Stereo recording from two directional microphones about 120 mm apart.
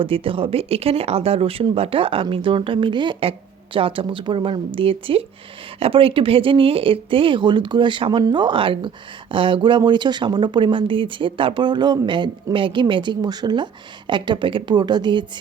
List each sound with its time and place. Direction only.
0.0 s speech: 50° right (ahead or behind)